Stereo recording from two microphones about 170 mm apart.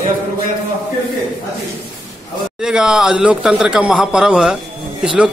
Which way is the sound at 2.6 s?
5° right (ahead or behind).